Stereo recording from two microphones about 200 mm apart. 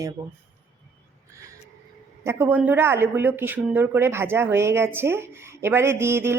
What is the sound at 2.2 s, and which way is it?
Speech, 10° right (ahead or behind).